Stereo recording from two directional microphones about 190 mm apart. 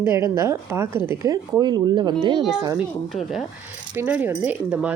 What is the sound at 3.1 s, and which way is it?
Speech, centre (ahead or behind).